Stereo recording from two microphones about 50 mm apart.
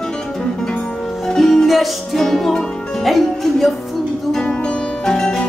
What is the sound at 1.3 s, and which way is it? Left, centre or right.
Music, centre.